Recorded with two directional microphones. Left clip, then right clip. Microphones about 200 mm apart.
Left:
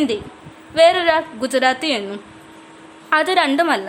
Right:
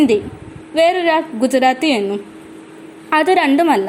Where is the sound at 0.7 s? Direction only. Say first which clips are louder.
Even; centre (ahead or behind).